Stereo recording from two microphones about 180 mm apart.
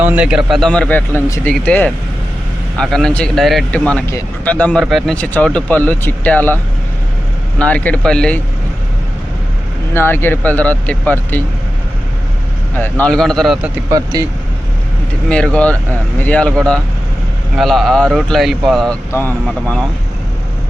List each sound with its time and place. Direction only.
0.0 s a man's voice: 5° right (ahead or behind)
0.5 s speech: 5° left (ahead or behind)
7.6 s speech: 5° left (ahead or behind)
9.9 s speech: 10° left (ahead or behind)
12.7 s speech: 10° left (ahead or behind)
13.9 s speech: 20° right (ahead or behind)
15.5 s speech: 5° left (ahead or behind)